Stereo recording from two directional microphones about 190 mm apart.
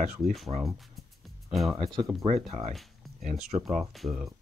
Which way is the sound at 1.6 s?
25° right (ahead or behind).